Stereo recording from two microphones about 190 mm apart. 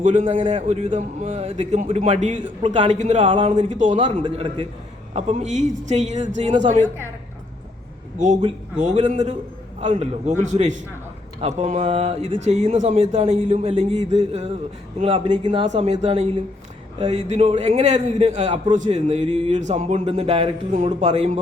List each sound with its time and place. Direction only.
0.0 s a man's voice: 40° right (ahead or behind)
8.8 s a man's voice: 40° right (ahead or behind)